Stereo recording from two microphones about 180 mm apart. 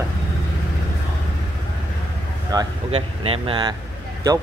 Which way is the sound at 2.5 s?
20° right (ahead or behind).